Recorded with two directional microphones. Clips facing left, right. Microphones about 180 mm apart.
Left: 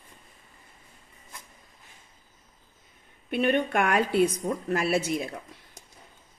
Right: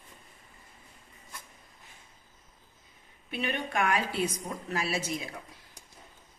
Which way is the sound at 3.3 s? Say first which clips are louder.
Left 9 dB; 55° left (ahead or behind).